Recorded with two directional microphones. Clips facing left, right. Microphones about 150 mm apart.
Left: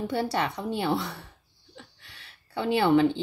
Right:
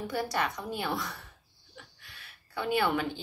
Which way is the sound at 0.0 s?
30° left (ahead or behind).